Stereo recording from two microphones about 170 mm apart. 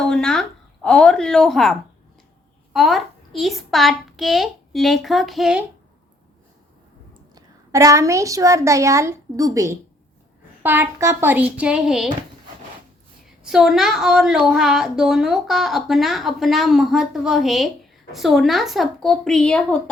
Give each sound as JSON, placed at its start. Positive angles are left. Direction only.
{"t": 0.0, "sound": "a woman's voice", "side_deg": 5}
{"t": 7.1, "sound": "a woman's voice", "side_deg": -20}
{"t": 13.4, "sound": "a woman's voice", "side_deg": -5}